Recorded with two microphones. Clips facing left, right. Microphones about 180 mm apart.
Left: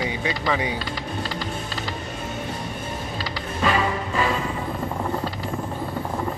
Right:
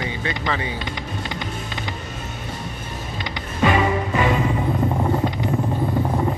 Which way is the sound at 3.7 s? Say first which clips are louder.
Right 3 dB; 10° right (ahead or behind).